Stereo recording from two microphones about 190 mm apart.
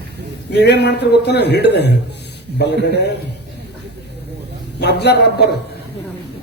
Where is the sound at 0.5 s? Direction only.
60° left (ahead or behind).